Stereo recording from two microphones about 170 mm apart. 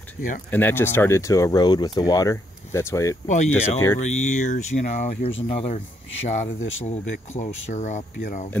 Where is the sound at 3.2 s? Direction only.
45° left (ahead or behind).